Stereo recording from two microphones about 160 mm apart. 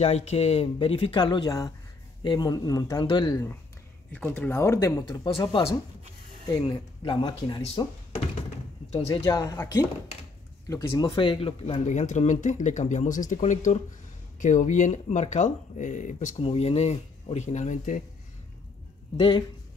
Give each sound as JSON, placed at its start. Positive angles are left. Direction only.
{"t": 0.0, "sound": "speech", "side_deg": 40}
{"t": 4.1, "sound": "speech", "side_deg": 10}
{"t": 9.1, "sound": "speech", "side_deg": 25}
{"t": 10.9, "sound": "speech", "side_deg": 30}
{"t": 16.4, "sound": "speech", "side_deg": 40}
{"t": 19.1, "sound": "speech", "side_deg": 30}